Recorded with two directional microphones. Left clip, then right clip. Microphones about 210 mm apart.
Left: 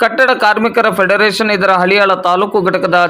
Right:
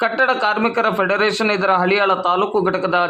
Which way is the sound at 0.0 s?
20° left (ahead or behind).